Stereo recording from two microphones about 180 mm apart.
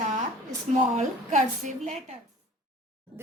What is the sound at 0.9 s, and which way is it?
A woman's voice, 45° right (ahead or behind).